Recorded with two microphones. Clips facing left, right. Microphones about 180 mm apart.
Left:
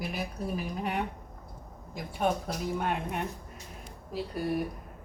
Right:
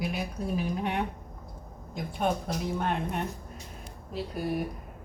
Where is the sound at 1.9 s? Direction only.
5° left (ahead or behind).